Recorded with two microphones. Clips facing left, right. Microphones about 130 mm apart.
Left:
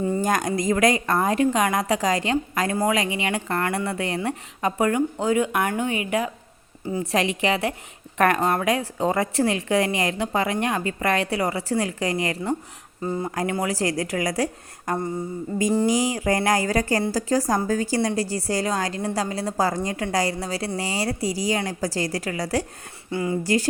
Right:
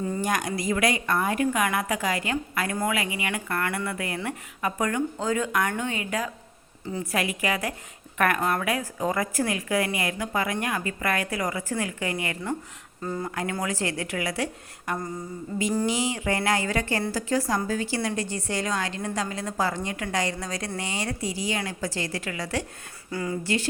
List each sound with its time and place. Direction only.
0.3 s a woman's voice: 45° left (ahead or behind)
4.9 s a woman's voice: 15° left (ahead or behind); by 12.5 s 35° left (ahead or behind)
13.0 s a woman's voice: 20° left (ahead or behind); by 22.6 s 35° left (ahead or behind)
23.1 s speech: 25° left (ahead or behind)
23.4 s a woman's voice: 40° left (ahead or behind)